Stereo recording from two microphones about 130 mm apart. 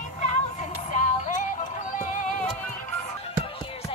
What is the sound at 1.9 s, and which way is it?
Music, 90° left.